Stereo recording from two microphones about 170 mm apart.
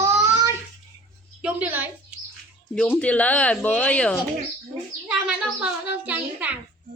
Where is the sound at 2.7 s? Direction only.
5° left (ahead or behind).